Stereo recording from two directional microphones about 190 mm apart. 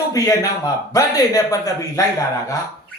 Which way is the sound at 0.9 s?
20° left (ahead or behind).